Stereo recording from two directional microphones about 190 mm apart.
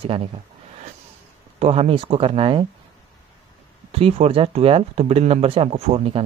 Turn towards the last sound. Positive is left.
turn(degrees=-30)  # may be behind; listen again after turning